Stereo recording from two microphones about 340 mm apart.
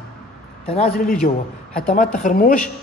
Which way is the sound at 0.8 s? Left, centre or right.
Left.